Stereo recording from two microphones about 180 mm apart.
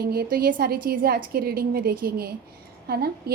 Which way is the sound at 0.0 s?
60° right (ahead or behind).